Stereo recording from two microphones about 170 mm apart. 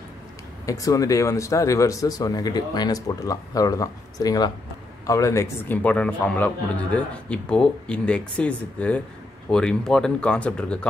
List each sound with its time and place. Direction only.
0.7 s a man's voice: 20° left (ahead or behind)